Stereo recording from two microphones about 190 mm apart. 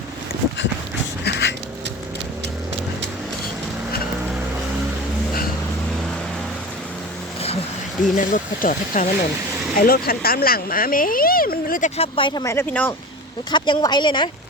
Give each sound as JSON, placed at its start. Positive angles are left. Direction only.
{"t": 1.2, "sound": "a sound", "side_deg": 60}
{"t": 8.1, "sound": "speech", "side_deg": 45}
{"t": 11.9, "sound": "speech", "side_deg": 25}
{"t": 13.5, "sound": "speech", "side_deg": 25}